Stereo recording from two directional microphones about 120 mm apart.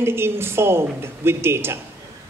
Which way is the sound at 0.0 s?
20° right (ahead or behind).